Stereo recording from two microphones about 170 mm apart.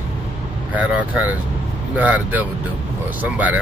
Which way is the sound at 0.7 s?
10° right (ahead or behind).